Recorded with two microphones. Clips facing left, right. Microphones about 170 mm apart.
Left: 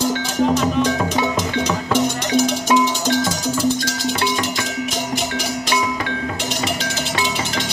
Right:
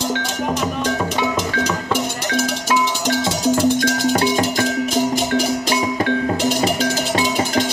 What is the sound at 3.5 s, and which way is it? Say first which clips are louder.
Music: right 4 dB; 55° right (ahead or behind).